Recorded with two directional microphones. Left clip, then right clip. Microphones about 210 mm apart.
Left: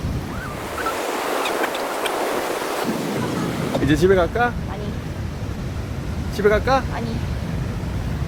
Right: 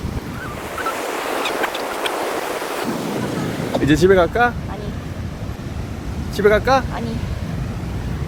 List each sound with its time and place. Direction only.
0.8 s vehicle: centre (ahead or behind)
3.8 s speech: 25° right (ahead or behind)
6.3 s speech: 30° right (ahead or behind)